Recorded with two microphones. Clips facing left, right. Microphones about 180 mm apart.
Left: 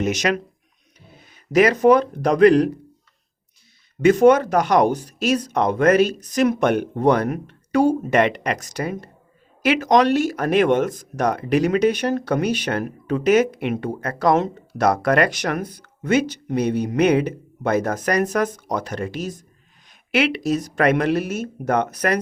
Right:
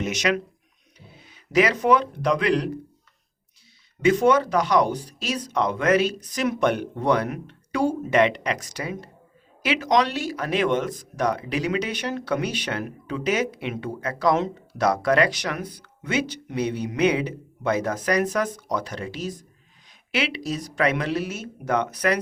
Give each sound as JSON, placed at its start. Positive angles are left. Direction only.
{"t": 0.0, "sound": "speech", "side_deg": 45}
{"t": 4.0, "sound": "speech", "side_deg": 50}